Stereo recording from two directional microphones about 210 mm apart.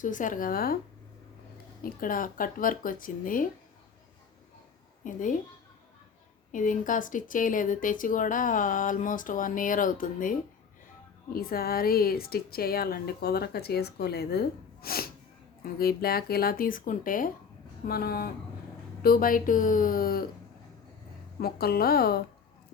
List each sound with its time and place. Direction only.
0.0 s speech: 40° left (ahead or behind)
1.8 s speech: 40° left (ahead or behind)
5.0 s speech: 40° left (ahead or behind)
6.5 s a woman's voice: 40° left (ahead or behind)
21.4 s a woman's voice: 45° left (ahead or behind)